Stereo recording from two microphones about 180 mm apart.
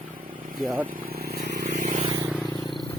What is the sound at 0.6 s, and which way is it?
Speech, 10° right (ahead or behind).